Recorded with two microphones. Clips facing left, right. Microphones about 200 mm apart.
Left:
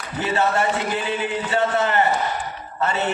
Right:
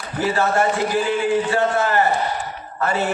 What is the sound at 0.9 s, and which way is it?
A man's voice, 20° left (ahead or behind).